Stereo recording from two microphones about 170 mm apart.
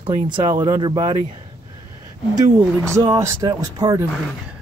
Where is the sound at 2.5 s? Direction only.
20° right (ahead or behind).